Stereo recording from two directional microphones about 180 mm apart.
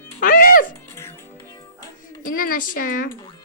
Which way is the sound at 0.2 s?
50° left (ahead or behind).